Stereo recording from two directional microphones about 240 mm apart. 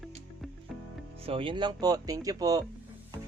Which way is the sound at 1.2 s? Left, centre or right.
Right.